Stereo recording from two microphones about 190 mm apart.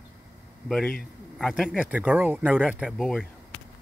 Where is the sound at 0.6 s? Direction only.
Centre (ahead or behind).